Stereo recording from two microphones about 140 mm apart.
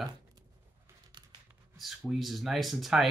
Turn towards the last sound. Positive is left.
turn(degrees=0)  # may be behind; listen again after turning